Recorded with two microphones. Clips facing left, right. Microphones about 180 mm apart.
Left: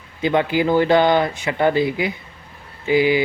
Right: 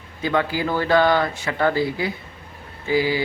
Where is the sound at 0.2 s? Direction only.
20° left (ahead or behind).